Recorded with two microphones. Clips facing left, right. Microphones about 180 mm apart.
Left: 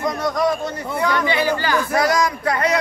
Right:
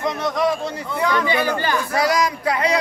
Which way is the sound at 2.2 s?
10° right (ahead or behind).